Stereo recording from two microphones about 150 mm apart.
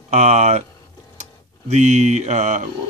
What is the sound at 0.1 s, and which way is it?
Speech, 50° right (ahead or behind).